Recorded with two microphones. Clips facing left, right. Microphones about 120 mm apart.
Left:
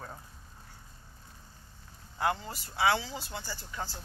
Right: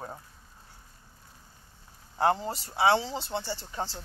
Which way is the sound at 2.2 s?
35° right (ahead or behind).